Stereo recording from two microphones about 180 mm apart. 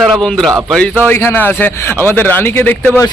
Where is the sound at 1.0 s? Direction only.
10° left (ahead or behind).